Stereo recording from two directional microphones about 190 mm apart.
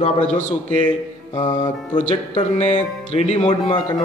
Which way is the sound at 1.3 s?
20° left (ahead or behind).